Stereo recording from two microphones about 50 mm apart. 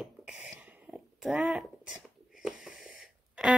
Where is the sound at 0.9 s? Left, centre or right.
Centre.